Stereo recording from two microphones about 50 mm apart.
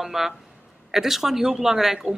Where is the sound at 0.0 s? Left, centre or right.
Centre.